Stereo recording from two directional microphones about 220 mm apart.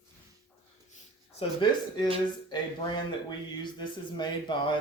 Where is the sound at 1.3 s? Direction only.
20° left (ahead or behind).